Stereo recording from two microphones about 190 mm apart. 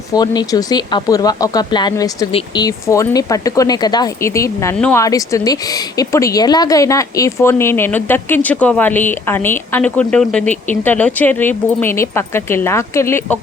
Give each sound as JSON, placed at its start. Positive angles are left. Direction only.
{"t": 0.1, "sound": "a woman's voice", "side_deg": 20}